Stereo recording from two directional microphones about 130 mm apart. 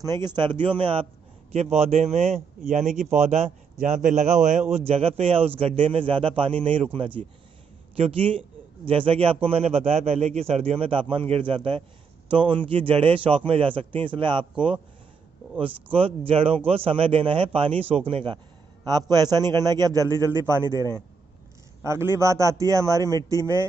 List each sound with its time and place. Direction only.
0.0 s a man's voice: 30° right (ahead or behind)
1.5 s a man's voice: 55° right (ahead or behind)
4.7 s a man's voice: 50° right (ahead or behind)
15.6 s a man's voice: 45° right (ahead or behind)
18.9 s a man's voice: 30° right (ahead or behind)